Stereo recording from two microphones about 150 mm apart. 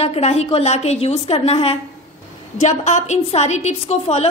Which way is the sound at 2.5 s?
50° left (ahead or behind).